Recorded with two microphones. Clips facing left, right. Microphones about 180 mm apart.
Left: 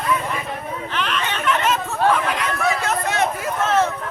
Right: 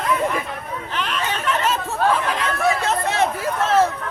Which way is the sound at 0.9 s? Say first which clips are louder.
Even; 35° right (ahead or behind).